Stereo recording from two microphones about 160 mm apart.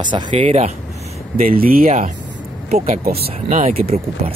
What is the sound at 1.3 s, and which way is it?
Speech, 65° right (ahead or behind).